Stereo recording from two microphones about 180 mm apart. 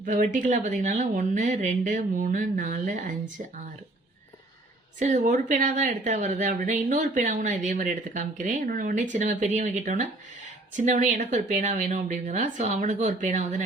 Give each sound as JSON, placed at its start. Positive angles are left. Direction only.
{"t": 0.0, "sound": "a woman's voice", "side_deg": -45}
{"t": 4.9, "sound": "a woman's voice", "side_deg": -45}